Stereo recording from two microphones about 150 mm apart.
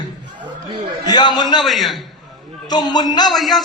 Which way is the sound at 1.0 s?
30° left (ahead or behind).